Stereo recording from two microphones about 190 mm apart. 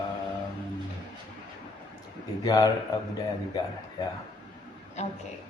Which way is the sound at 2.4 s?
20° left (ahead or behind).